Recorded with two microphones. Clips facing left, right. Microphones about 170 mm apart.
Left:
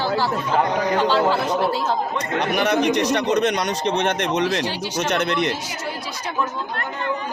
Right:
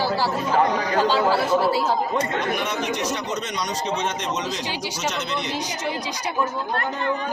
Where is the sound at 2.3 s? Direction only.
70° left (ahead or behind).